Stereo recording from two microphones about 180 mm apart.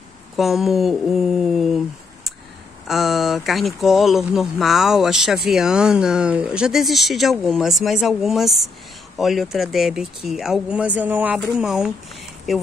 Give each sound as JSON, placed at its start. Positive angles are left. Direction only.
{"t": 0.4, "sound": "speech", "side_deg": 0}
{"t": 2.9, "sound": "speech", "side_deg": 0}